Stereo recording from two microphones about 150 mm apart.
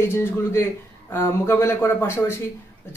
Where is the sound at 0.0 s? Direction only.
15° left (ahead or behind).